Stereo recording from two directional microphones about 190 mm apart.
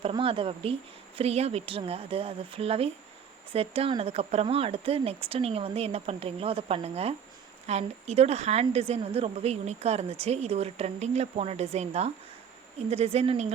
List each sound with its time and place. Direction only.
0.0 s a woman's voice: 30° right (ahead or behind)